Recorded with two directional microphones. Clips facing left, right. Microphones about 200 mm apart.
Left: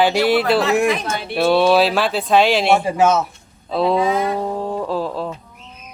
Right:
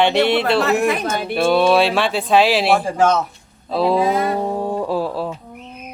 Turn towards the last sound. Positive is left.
turn(degrees=-5)  # may be behind; listen again after turning